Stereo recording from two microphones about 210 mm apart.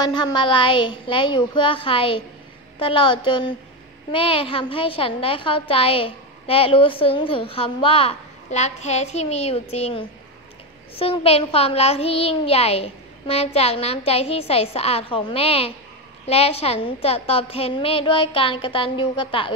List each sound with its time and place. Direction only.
0.0 s a woman's voice: 20° left (ahead or behind)